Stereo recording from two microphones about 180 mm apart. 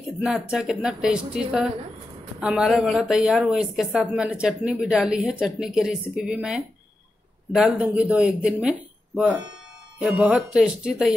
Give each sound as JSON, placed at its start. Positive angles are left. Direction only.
{"t": 0.2, "sound": "a woman's voice", "side_deg": -5}